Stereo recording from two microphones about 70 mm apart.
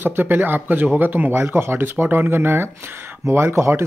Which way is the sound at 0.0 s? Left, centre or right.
Right.